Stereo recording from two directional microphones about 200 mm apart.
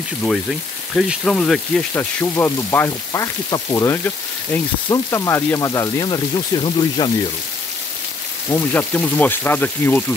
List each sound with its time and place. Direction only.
0.9 s speech: 5° left (ahead or behind); by 7.1 s 20° left (ahead or behind)
8.5 s speech: 10° left (ahead or behind)